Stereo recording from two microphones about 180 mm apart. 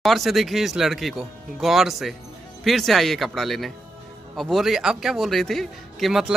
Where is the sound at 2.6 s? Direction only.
Centre (ahead or behind).